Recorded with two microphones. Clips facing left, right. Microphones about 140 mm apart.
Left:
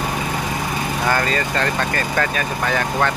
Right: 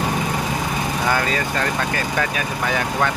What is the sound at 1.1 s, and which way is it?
Speech, 5° right (ahead or behind).